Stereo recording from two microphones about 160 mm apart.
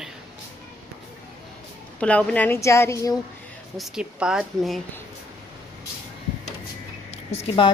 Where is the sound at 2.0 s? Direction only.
10° left (ahead or behind).